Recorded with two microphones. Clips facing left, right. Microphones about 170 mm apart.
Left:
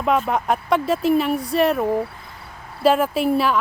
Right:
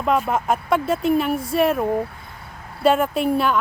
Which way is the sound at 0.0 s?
Centre (ahead or behind).